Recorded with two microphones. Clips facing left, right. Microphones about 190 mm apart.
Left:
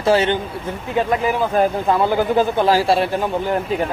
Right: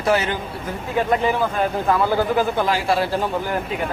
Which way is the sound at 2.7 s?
35° left (ahead or behind).